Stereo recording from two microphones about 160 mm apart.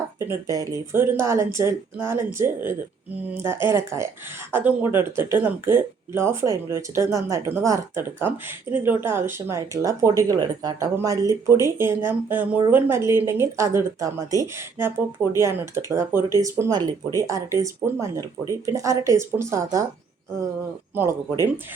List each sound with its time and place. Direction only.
0.2 s speech: 20° right (ahead or behind)
20.9 s speech: 15° right (ahead or behind)